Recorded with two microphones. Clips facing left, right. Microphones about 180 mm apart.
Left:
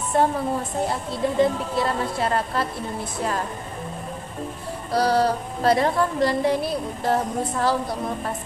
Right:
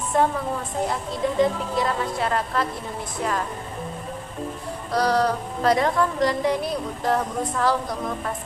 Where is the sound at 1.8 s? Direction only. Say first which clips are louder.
Left 1 dB; 30° left (ahead or behind).